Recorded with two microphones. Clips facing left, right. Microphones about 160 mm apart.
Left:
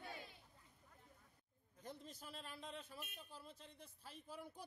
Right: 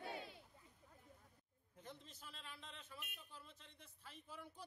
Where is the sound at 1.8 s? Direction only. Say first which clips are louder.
Left 4 dB; 40° left (ahead or behind).